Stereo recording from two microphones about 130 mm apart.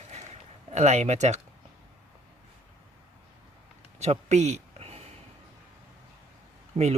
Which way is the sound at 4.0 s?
60° right (ahead or behind).